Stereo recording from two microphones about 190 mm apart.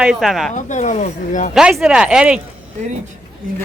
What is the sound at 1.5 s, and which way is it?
Speech, 5° right (ahead or behind).